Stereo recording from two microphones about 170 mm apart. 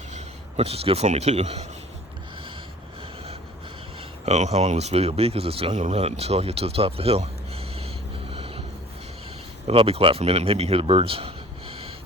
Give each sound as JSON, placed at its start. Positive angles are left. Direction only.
{"t": 0.1, "sound": "speech", "side_deg": -35}
{"t": 4.3, "sound": "speech", "side_deg": -40}
{"t": 8.3, "sound": "a sound", "side_deg": -35}
{"t": 9.6, "sound": "a man's voice", "side_deg": -35}